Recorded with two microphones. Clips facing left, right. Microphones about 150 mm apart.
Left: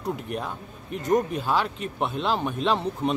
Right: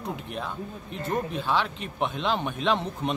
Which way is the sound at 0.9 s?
10° left (ahead or behind).